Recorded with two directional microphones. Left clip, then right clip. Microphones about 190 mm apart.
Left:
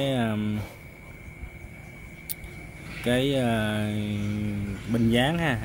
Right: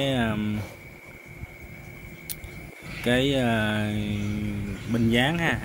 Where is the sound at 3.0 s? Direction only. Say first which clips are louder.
Right 1 dB; 5° left (ahead or behind).